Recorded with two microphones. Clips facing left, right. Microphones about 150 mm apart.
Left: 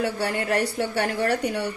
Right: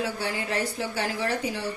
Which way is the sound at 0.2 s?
65° left (ahead or behind).